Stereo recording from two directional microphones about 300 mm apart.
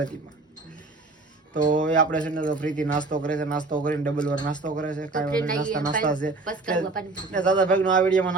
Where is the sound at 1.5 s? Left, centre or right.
Right.